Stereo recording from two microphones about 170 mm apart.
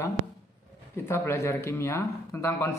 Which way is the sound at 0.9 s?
15° left (ahead or behind).